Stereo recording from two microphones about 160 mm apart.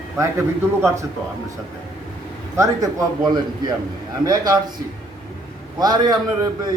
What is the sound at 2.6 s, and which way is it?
A man's voice, 25° right (ahead or behind).